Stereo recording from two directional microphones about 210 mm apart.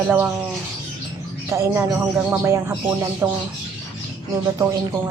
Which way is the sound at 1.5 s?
15° right (ahead or behind).